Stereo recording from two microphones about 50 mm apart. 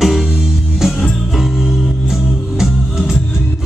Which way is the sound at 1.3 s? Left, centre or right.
Centre.